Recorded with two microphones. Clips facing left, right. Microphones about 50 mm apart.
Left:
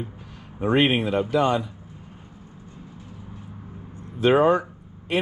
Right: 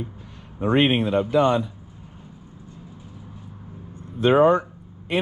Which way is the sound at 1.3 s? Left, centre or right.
Right.